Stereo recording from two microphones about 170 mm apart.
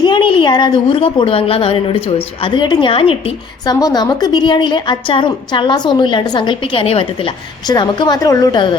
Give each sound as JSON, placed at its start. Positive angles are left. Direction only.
{"t": 0.0, "sound": "a woman's voice", "side_deg": 30}
{"t": 3.8, "sound": "a woman's voice", "side_deg": 20}